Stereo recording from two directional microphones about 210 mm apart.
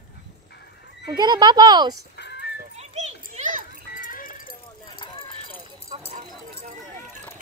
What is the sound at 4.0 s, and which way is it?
Clip-clop, 40° left (ahead or behind).